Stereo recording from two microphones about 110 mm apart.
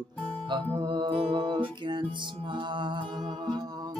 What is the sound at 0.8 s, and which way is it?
Music, 45° right (ahead or behind).